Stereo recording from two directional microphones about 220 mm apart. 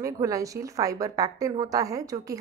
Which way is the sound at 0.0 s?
15° right (ahead or behind).